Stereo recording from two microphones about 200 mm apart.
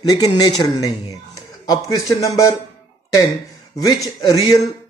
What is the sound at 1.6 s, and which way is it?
Speech, 20° left (ahead or behind).